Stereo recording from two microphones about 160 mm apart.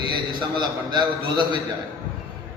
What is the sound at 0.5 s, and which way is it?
Speech, 30° right (ahead or behind).